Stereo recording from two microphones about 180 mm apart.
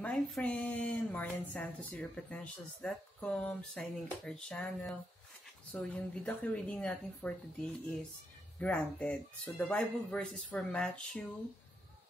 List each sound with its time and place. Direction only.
0.0 s a woman's voice: 5° left (ahead or behind)
8.5 s speech: 5° left (ahead or behind)